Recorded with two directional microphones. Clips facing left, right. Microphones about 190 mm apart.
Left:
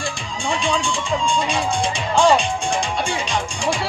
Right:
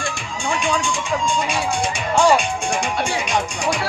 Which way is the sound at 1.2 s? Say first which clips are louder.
Left 1 dB; 10° right (ahead or behind).